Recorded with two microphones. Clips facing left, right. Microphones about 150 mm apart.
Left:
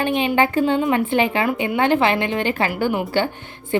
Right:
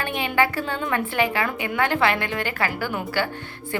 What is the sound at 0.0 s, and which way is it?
A woman's voice, 20° left (ahead or behind).